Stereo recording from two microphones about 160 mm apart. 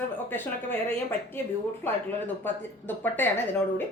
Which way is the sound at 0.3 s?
15° left (ahead or behind).